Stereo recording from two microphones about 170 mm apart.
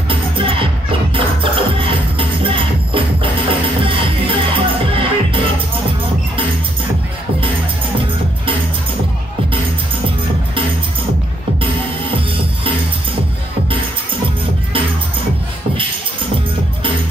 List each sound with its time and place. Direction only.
0.1 s music: 30° right (ahead or behind)